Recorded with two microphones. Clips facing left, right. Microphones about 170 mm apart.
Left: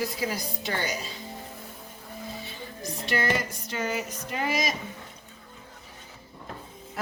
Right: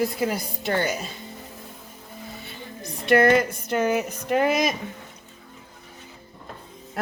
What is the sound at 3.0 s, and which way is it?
A woman's voice, 60° right (ahead or behind).